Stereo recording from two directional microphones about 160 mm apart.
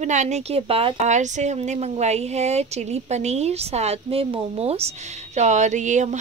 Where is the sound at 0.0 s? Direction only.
45° right (ahead or behind).